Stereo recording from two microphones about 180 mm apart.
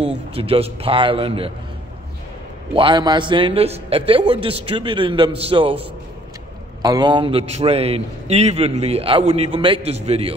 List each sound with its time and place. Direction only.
0.0 s a man's voice: 30° right (ahead or behind)
2.7 s a man's voice: 25° right (ahead or behind)